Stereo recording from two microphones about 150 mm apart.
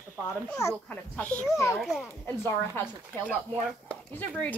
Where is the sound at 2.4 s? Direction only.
15° left (ahead or behind).